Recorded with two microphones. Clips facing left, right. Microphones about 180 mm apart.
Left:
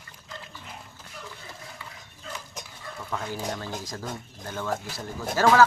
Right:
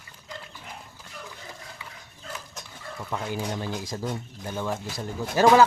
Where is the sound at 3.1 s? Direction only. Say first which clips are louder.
Right 1 dB; 15° right (ahead or behind).